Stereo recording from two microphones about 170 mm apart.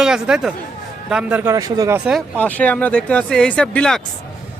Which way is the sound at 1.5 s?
20° right (ahead or behind).